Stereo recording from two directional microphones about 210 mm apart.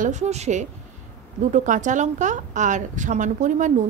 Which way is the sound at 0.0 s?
35° right (ahead or behind).